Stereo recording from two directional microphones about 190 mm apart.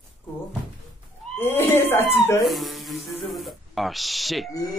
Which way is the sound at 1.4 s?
10° left (ahead or behind).